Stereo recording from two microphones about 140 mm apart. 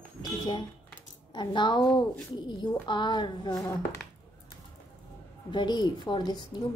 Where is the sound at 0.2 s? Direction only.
35° left (ahead or behind).